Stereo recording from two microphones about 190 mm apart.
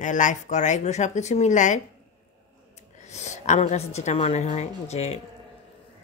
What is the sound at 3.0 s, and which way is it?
Speech, 35° left (ahead or behind).